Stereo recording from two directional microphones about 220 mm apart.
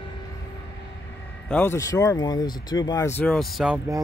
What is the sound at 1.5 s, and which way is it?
Speech, 10° left (ahead or behind).